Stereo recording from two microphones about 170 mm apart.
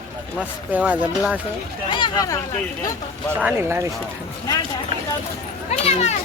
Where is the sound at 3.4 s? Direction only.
15° right (ahead or behind).